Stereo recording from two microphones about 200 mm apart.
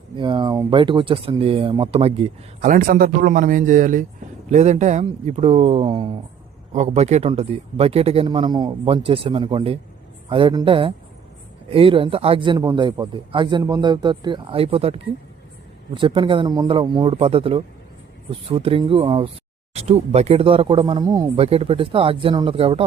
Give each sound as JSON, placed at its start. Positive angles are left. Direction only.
{"t": 0.2, "sound": "speech", "side_deg": -25}
{"t": 2.6, "sound": "speech", "side_deg": -45}
{"t": 21.4, "sound": "speech", "side_deg": -30}